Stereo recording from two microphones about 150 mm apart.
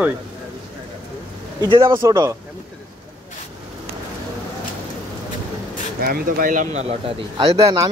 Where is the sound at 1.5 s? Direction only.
35° right (ahead or behind).